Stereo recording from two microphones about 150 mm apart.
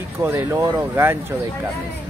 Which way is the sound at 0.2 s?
15° right (ahead or behind).